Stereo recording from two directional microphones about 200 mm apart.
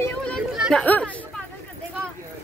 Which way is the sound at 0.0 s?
5° left (ahead or behind).